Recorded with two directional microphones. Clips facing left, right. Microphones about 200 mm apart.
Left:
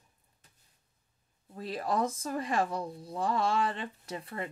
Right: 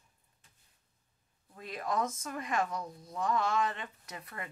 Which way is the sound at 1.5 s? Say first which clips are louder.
Left 3 dB; 30° left (ahead or behind).